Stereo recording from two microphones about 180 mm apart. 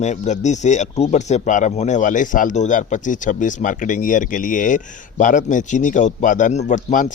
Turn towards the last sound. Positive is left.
turn(degrees=45)  # may be behind; listen again after turning